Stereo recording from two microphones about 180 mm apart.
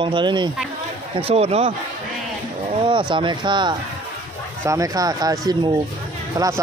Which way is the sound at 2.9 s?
25° right (ahead or behind).